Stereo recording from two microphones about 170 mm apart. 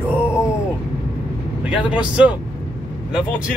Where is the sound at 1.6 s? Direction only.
5° right (ahead or behind).